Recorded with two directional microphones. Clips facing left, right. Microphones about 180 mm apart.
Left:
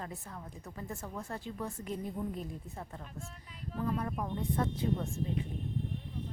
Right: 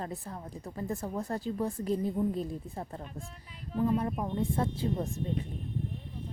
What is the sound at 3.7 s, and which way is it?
A woman's voice, 25° right (ahead or behind).